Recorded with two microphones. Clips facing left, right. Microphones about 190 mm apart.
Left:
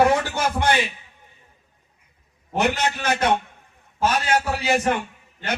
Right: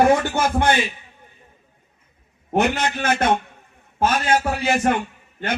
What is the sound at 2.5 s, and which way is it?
A man's voice, 55° right (ahead or behind).